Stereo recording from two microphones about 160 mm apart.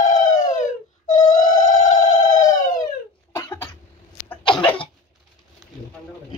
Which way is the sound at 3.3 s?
15° left (ahead or behind).